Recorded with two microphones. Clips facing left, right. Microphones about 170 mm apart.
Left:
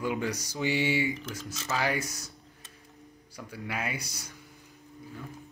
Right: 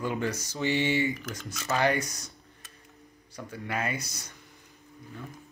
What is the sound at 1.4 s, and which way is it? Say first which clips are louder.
Speech: even; 25° left (ahead or behind).